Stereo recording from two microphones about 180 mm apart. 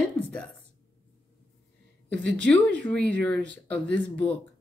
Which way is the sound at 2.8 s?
5° left (ahead or behind).